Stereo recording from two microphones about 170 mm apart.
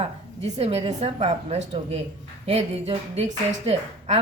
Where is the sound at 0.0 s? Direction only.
35° right (ahead or behind).